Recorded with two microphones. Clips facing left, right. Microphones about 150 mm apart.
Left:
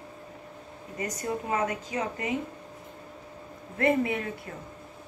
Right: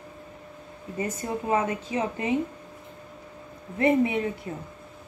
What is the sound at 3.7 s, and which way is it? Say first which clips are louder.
Speech: right 3 dB; 20° right (ahead or behind).